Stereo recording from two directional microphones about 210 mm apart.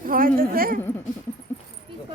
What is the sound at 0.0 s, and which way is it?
Speech, 40° right (ahead or behind).